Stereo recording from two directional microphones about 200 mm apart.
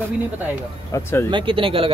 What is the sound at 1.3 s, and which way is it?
Speech, 25° right (ahead or behind).